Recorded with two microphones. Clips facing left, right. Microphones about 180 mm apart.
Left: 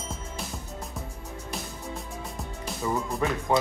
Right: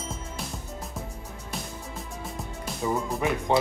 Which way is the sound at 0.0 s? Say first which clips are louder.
Right 1 dB; centre (ahead or behind).